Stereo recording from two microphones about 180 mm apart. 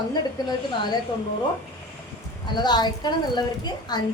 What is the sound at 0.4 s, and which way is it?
Speech, 20° left (ahead or behind).